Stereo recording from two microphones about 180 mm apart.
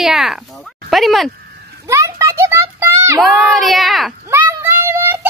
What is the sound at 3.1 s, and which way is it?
Speech, centre (ahead or behind).